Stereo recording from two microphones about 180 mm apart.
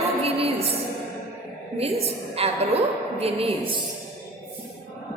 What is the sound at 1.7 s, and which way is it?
A woman's voice, 35° right (ahead or behind).